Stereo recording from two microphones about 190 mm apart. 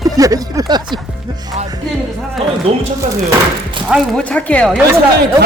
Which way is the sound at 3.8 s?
Centre (ahead or behind).